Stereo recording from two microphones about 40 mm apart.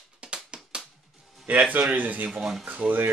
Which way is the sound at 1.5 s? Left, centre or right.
Right.